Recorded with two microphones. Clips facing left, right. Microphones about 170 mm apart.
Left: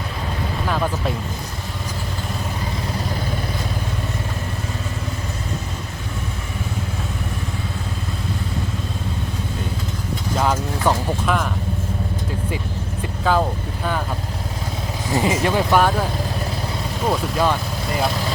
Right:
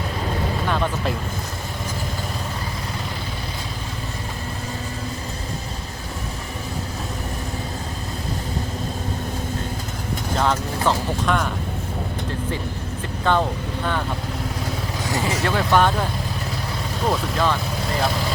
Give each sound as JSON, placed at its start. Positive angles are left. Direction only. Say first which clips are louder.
{"t": 0.7, "sound": "speech", "louder": "left 2 dB", "side_deg": 0}
{"t": 10.3, "sound": "vehicle", "louder": "left 1 dB", "side_deg": 5}
{"t": 13.3, "sound": "vehicle", "louder": "left 1 dB", "side_deg": 5}
{"t": 15.2, "sound": "vehicle", "louder": "left 4 dB", "side_deg": 15}
{"t": 17.1, "sound": "vehicle", "louder": "left 2 dB", "side_deg": 10}